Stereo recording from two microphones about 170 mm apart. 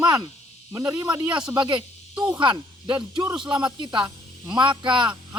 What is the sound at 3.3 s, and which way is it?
Speech, 10° right (ahead or behind).